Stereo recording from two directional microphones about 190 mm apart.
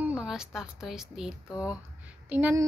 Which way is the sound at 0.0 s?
5° right (ahead or behind).